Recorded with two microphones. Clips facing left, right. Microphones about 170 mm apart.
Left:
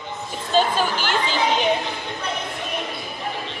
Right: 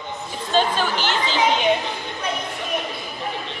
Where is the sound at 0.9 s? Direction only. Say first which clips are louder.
Even; 45° left (ahead or behind).